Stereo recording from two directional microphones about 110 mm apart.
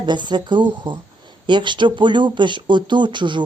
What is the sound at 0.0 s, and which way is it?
Speech, 45° right (ahead or behind).